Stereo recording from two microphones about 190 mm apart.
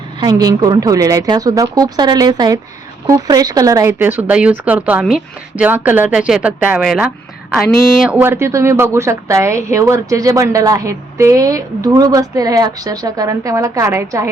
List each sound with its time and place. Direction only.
0.2 s a woman's voice: 20° right (ahead or behind)